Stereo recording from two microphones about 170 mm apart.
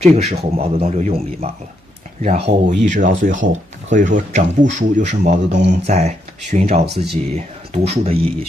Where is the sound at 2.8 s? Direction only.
50° right (ahead or behind).